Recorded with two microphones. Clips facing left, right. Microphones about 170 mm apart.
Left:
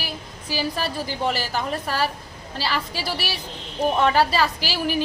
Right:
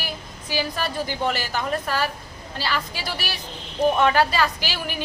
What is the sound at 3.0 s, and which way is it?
A woman's voice, 5° left (ahead or behind).